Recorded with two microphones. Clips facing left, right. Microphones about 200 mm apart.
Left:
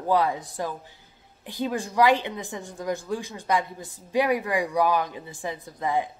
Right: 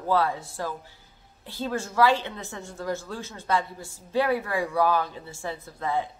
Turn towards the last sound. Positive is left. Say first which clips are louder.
# left 2 dB
turn(degrees=15)  # may be behind; listen again after turning